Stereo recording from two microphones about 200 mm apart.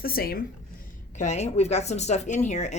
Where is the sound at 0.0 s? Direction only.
50° left (ahead or behind).